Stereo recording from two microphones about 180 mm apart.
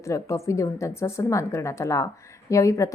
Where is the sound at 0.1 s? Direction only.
15° left (ahead or behind).